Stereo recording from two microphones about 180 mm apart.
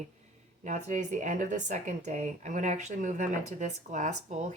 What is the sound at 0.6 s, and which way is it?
Speech, 40° right (ahead or behind).